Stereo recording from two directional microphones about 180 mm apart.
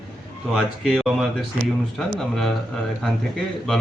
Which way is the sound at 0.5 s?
Centre (ahead or behind).